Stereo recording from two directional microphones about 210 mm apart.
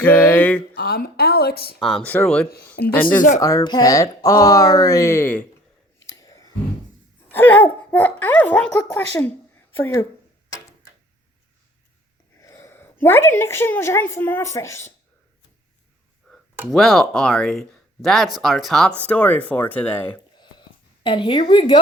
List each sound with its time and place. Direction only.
0.0 s a sound: 5° left (ahead or behind)
0.7 s a sound: 45° left (ahead or behind)
1.8 s speech: 5° left (ahead or behind)
3.2 s speech: 40° left (ahead or behind)
3.4 s speech: 15° left (ahead or behind)
6.1 s clicking: 15° left (ahead or behind)
7.3 s speech: 10° left (ahead or behind)
9.7 s speech: 10° left (ahead or behind)
12.4 s a woman's voice: 15° left (ahead or behind)
16.7 s speech: centre (ahead or behind)
20.3 s a sound: 20° left (ahead or behind)
21.5 s speech: 20° left (ahead or behind)